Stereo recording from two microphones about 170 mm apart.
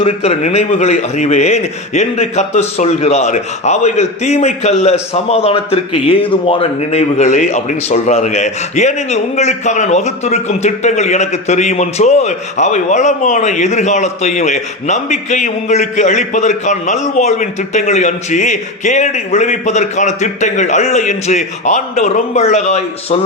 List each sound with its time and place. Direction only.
0.0 s a man's voice: 35° left (ahead or behind)